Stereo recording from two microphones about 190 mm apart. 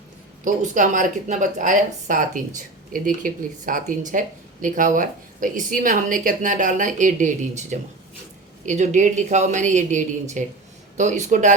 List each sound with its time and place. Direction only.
0.4 s a woman's voice: 40° right (ahead or behind)